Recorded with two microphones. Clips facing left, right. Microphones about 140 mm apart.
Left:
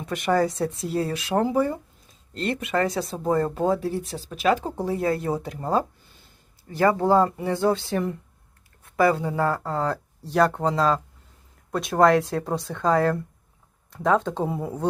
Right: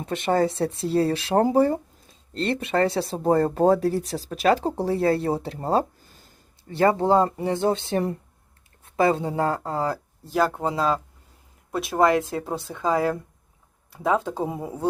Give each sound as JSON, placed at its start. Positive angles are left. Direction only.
{"t": 0.1, "sound": "speech", "side_deg": -25}
{"t": 6.7, "sound": "speech", "side_deg": -25}